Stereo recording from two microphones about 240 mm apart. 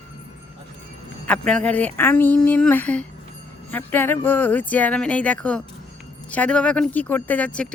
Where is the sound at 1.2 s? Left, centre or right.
Centre.